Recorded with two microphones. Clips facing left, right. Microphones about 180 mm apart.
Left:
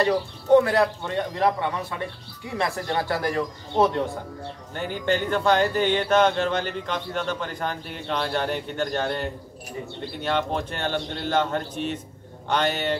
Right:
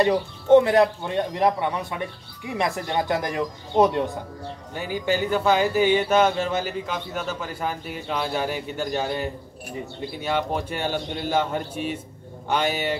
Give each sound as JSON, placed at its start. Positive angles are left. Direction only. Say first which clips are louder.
{"t": 0.0, "sound": "speech", "louder": "right 2 dB", "side_deg": -20}